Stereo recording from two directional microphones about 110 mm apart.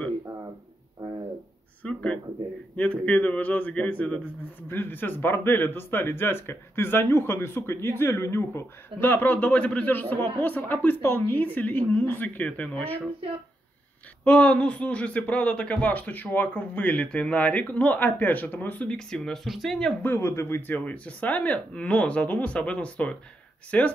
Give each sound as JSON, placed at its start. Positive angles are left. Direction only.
{"t": 1.8, "sound": "a sound", "side_deg": 10}
{"t": 2.7, "sound": "speech", "side_deg": 10}
{"t": 14.2, "sound": "speech", "side_deg": 10}
{"t": 20.0, "sound": "speech", "side_deg": 20}